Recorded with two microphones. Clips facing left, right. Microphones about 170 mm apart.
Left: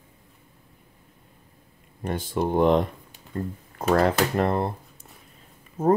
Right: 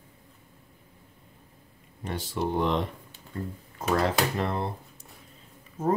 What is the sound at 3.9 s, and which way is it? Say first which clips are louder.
Speech: left 5 dB; 55° left (ahead or behind).